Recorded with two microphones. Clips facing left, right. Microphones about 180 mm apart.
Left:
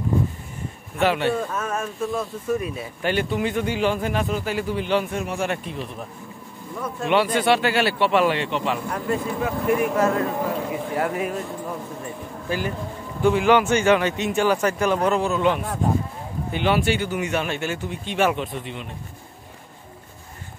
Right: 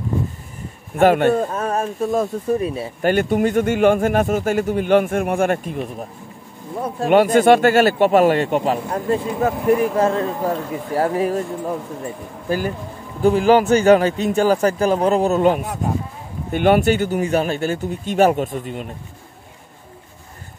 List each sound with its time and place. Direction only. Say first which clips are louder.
0.9 s a man's voice: right 7 dB; 50° right (ahead or behind); by 2.9 s 30° right (ahead or behind)
3.0 s a man's voice: right 6 dB; 45° right (ahead or behind)
6.7 s a man's voice: right 6 dB; 35° right (ahead or behind)
7.2 s a man's voice: right 8 dB; 45° right (ahead or behind)
8.7 s a man's voice: right 4 dB; 30° right (ahead or behind)
12.4 s a man's voice: right 4 dB; 40° right (ahead or behind)